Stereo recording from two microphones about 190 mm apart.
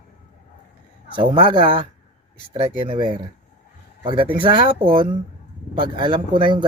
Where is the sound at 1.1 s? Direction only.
25° right (ahead or behind).